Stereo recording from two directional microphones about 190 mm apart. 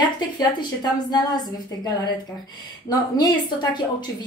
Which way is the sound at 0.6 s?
20° left (ahead or behind).